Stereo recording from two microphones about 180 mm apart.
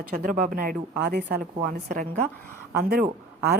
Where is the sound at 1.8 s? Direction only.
50° right (ahead or behind).